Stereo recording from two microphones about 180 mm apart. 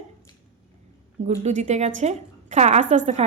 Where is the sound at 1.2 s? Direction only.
40° right (ahead or behind).